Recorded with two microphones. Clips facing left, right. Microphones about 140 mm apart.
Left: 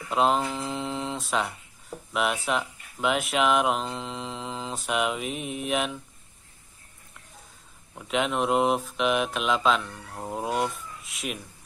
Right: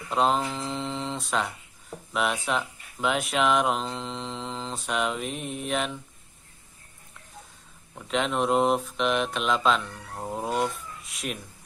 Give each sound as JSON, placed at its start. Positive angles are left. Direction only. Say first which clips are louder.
{"t": 0.1, "sound": "speech", "louder": "left 1 dB", "side_deg": 0}
{"t": 7.9, "sound": "speech", "louder": "even", "side_deg": 5}